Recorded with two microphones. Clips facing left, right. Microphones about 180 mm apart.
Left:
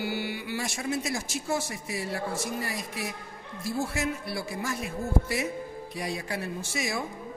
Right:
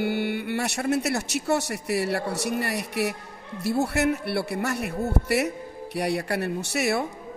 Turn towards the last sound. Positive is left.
turn(degrees=-70)  # may be behind; listen again after turning